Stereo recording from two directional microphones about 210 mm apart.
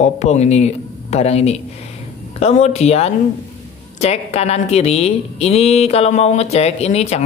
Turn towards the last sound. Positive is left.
turn(degrees=30)  # may be behind; listen again after turning